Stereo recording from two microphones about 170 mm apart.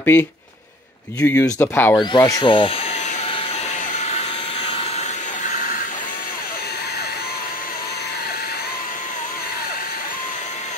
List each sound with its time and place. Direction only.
0.0 s speech: 15° left (ahead or behind)
5.4 s vacuum cleaner: 50° left (ahead or behind)